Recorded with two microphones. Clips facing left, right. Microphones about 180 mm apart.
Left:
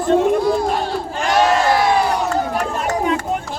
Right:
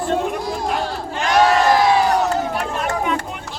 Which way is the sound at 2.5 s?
40° left (ahead or behind).